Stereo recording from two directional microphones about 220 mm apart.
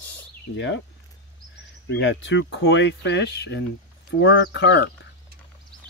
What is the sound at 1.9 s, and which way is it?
Speech, 55° left (ahead or behind).